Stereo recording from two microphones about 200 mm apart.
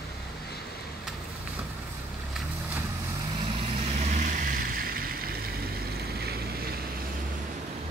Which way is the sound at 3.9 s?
40° right (ahead or behind).